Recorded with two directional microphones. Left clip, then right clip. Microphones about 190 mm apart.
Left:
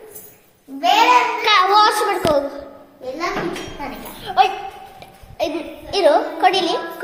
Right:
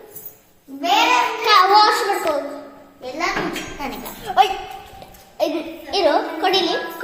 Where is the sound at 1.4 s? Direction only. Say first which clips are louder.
Right 3 dB; centre (ahead or behind).